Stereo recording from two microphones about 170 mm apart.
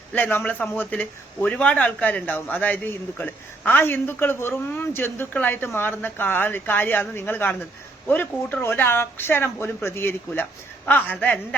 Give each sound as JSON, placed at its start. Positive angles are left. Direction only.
{"t": 0.1, "sound": "a man's voice", "side_deg": 10}